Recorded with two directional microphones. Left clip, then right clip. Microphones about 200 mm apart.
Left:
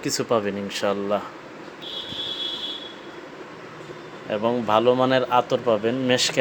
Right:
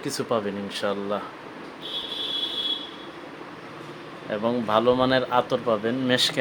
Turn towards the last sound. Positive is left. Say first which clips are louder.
# left 1 dB
turn(degrees=10)  # may be behind; listen again after turning